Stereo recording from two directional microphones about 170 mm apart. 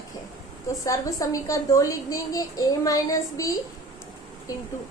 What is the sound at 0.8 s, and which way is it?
A woman's voice, 20° left (ahead or behind).